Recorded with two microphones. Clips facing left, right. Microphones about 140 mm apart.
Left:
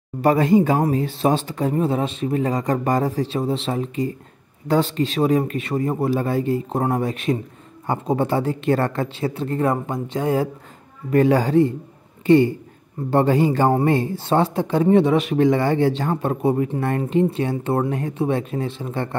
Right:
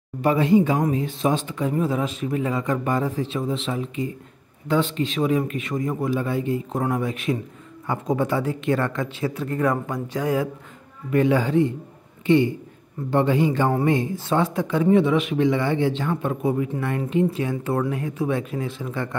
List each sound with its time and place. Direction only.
0.2 s speech: 40° left (ahead or behind)